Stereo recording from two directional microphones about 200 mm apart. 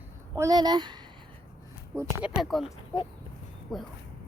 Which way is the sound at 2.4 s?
Centre (ahead or behind).